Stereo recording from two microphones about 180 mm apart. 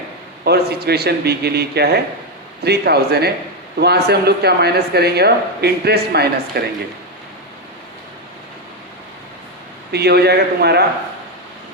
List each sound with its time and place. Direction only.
0.4 s speech: 65° right (ahead or behind)
9.9 s speech: 65° right (ahead or behind)